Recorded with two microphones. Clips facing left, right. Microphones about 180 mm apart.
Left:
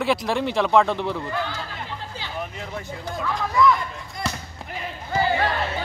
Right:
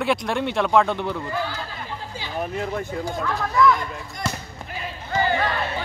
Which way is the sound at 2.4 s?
50° right (ahead or behind).